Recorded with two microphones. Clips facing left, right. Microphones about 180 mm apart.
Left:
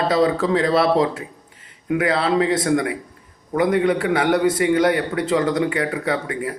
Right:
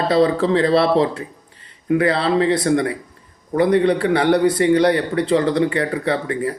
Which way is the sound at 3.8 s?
35° right (ahead or behind).